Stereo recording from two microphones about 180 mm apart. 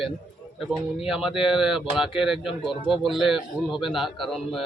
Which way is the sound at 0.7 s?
Centre (ahead or behind).